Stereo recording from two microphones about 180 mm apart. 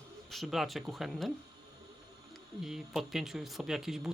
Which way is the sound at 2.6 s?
Centre (ahead or behind).